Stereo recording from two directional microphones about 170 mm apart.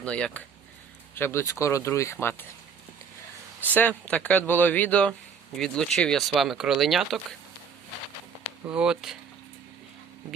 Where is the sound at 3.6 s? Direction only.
10° left (ahead or behind).